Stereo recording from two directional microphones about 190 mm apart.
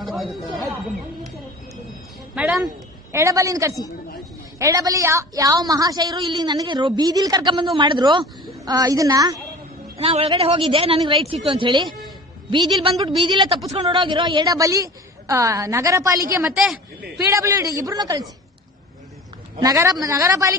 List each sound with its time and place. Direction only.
0.0 s chatter: centre (ahead or behind)
2.3 s speech: 5° right (ahead or behind)
3.1 s a woman's voice: 15° right (ahead or behind)
9.9 s a woman's voice: 30° right (ahead or behind)
16.4 s speech: centre (ahead or behind)
17.3 s a woman's voice: 15° right (ahead or behind)
19.6 s a woman's voice: 20° right (ahead or behind)